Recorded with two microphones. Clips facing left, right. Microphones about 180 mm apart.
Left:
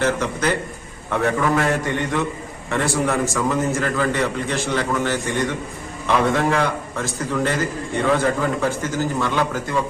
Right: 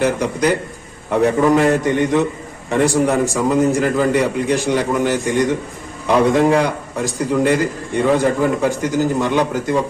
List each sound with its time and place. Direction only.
0.0 s a man's voice: 15° right (ahead or behind)